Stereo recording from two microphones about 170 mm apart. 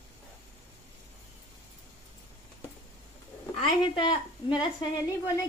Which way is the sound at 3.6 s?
30° left (ahead or behind).